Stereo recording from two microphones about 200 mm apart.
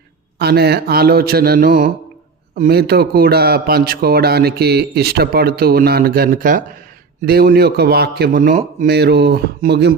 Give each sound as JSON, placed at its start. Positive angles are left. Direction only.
{"t": 0.3, "sound": "a man's voice", "side_deg": -55}